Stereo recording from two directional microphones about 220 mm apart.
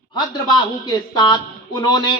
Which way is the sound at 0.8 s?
20° left (ahead or behind).